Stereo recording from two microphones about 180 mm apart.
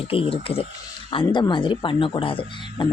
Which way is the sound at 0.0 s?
30° left (ahead or behind).